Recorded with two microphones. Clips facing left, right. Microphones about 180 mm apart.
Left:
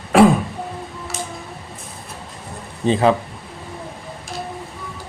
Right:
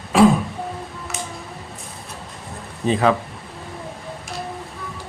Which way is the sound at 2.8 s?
30° left (ahead or behind).